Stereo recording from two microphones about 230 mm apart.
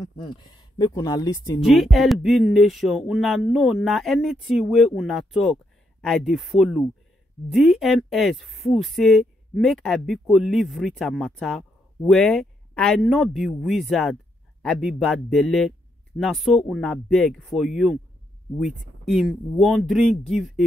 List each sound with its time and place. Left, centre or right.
0.0 s speech: centre
1.6 s speech: centre